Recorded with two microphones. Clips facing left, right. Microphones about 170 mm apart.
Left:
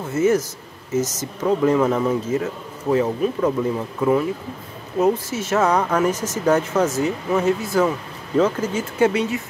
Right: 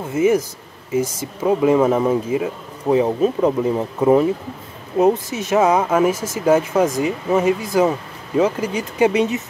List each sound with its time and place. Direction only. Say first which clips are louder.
0.1 s speech: right 2 dB; 15° right (ahead or behind)
2.2 s speech: right 2 dB; 15° right (ahead or behind)
3.1 s speech: right 3 dB; 25° right (ahead or behind)
4.9 s speech: right 3 dB; 20° right (ahead or behind)